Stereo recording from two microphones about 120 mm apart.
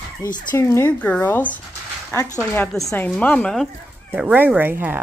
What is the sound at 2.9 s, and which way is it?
Speech, 15° left (ahead or behind).